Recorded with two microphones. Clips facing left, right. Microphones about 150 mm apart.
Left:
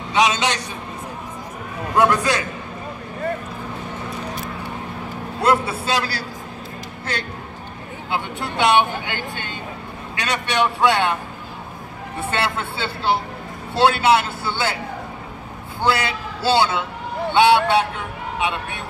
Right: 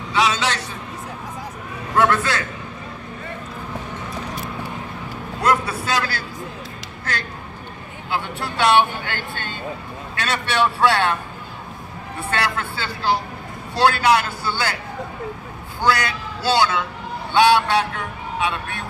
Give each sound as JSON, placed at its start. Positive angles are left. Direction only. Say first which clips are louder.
{"t": 0.1, "sound": "speech", "louder": "left 2 dB", "side_deg": 20}
{"t": 2.0, "sound": "a man's voice", "louder": "left 1 dB", "side_deg": 15}
{"t": 5.4, "sound": "a man's voice", "louder": "left 1 dB", "side_deg": 30}
{"t": 8.1, "sound": "a man's voice", "louder": "even", "side_deg": 20}
{"t": 12.3, "sound": "speech", "louder": "even", "side_deg": 25}
{"t": 15.8, "sound": "speech", "louder": "even", "side_deg": 30}